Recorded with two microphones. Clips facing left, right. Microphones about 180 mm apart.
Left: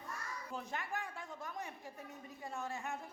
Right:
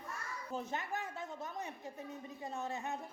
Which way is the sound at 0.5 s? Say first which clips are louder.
Right 3 dB; 20° right (ahead or behind).